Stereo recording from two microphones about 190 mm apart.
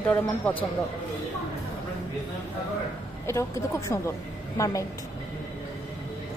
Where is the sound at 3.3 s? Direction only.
15° left (ahead or behind).